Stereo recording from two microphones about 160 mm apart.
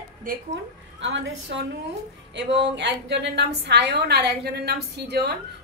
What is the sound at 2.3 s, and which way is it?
A woman's voice, 90° right.